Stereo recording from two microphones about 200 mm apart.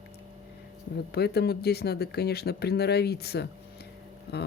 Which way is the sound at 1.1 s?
55° left (ahead or behind).